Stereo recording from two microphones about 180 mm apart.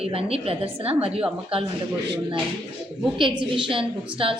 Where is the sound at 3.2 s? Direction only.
30° right (ahead or behind).